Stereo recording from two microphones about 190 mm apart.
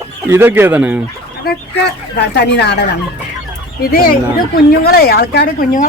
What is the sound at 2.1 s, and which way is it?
Speech, 60° left (ahead or behind).